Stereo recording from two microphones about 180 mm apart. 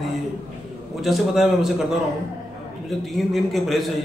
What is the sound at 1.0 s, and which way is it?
Speech, centre (ahead or behind).